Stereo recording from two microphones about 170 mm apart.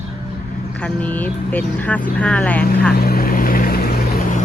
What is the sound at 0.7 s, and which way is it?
Speech, 10° left (ahead or behind).